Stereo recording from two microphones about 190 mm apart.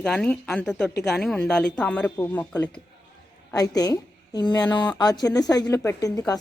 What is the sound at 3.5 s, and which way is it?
A woman's voice, 20° left (ahead or behind).